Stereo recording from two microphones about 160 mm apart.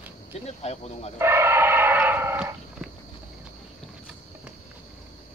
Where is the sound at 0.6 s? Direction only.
40° left (ahead or behind).